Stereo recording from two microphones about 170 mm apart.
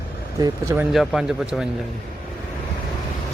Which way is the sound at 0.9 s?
5° right (ahead or behind).